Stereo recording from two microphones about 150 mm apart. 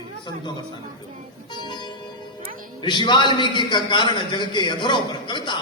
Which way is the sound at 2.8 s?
30° left (ahead or behind).